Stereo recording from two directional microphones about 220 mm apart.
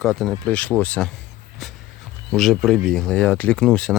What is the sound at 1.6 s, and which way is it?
Music, centre (ahead or behind).